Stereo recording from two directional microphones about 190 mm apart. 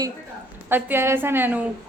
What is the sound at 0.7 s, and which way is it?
Speech, 10° right (ahead or behind).